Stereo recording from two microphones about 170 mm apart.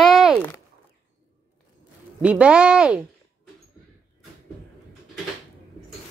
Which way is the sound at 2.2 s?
5° right (ahead or behind).